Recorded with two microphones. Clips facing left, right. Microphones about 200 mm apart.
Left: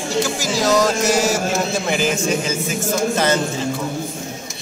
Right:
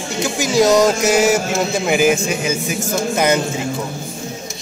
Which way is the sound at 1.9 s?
10° right (ahead or behind).